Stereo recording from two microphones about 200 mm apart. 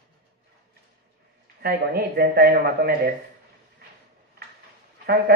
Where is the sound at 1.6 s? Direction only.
50° right (ahead or behind).